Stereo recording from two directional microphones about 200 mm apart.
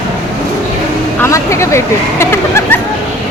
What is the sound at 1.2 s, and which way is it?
Speech, 15° left (ahead or behind).